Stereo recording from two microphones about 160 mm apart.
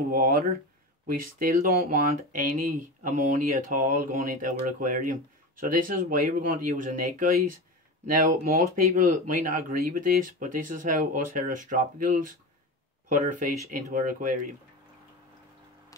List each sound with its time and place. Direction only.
0.1 s speech: 65° right (ahead or behind)
4.5 s speech: 50° right (ahead or behind)
8.7 s speech: 55° right (ahead or behind)